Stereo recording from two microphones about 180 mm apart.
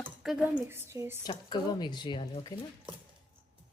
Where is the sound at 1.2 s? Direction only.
25° left (ahead or behind).